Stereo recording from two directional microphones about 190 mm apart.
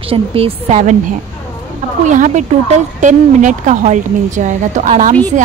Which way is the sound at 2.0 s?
40° right (ahead or behind).